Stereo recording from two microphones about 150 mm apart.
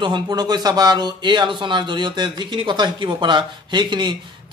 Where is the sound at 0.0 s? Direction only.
30° right (ahead or behind).